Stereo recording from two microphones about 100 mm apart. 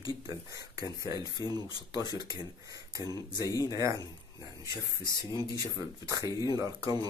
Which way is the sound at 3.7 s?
35° right (ahead or behind).